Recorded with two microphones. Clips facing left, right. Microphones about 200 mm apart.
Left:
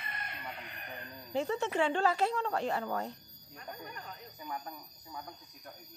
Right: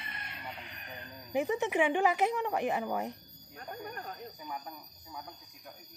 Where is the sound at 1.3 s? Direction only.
15° right (ahead or behind).